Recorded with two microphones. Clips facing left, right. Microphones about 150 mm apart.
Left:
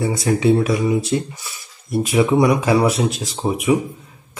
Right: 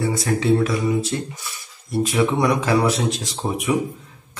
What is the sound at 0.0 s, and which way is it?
Speech, 15° left (ahead or behind).